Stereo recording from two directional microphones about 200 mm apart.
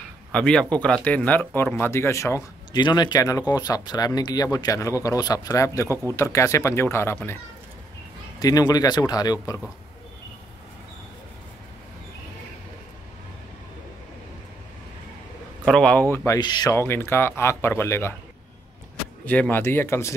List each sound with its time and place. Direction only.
0.3 s speech: 5° left (ahead or behind)
8.4 s speech: 20° left (ahead or behind)
15.6 s speech: 5° left (ahead or behind)
19.2 s speech: 10° left (ahead or behind)